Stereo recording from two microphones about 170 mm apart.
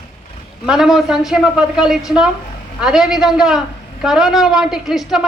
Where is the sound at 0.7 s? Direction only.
Centre (ahead or behind).